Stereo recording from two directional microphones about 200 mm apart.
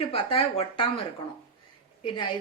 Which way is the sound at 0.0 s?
30° left (ahead or behind).